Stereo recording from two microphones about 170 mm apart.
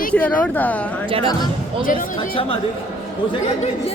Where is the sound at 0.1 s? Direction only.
10° left (ahead or behind).